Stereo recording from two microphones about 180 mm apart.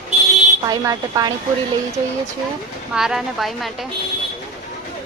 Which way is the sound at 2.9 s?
5° right (ahead or behind).